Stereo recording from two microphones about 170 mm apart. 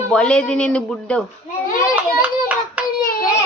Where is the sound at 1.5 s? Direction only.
40° left (ahead or behind).